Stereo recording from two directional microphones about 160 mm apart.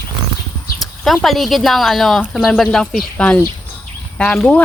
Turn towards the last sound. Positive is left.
turn(degrees=5)  # may be behind; listen again after turning